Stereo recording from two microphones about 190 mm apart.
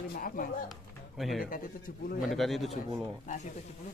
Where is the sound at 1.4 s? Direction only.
45° left (ahead or behind).